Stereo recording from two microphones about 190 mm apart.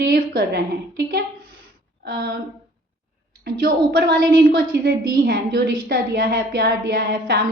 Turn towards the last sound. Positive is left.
turn(degrees=-55)  # may be behind; listen again after turning